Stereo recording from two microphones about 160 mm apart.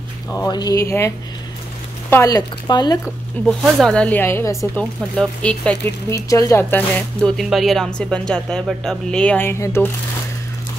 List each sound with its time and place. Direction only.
0.3 s speech: 25° left (ahead or behind)
3.4 s speech: 5° left (ahead or behind)
6.1 s speech: 20° left (ahead or behind)